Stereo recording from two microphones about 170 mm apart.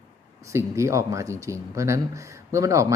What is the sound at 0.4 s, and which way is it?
Speech, 15° right (ahead or behind).